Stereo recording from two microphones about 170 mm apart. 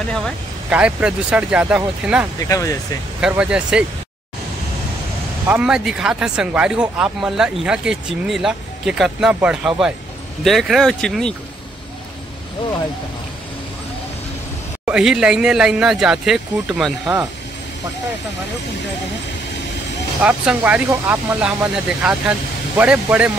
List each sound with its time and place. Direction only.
0.7 s speech: 5° right (ahead or behind)
2.4 s speech: 20° left (ahead or behind)
3.2 s speech: 5° right (ahead or behind)
5.5 s speech: 5° right (ahead or behind)
14.9 s speech: 5° right (ahead or behind)
20.2 s speech: 10° right (ahead or behind)